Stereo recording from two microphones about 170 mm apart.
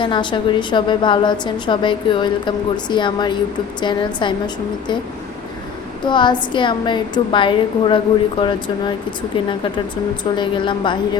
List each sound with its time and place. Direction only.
0.0 s a woman's voice: 30° left (ahead or behind)
6.1 s a woman's voice: 25° left (ahead or behind)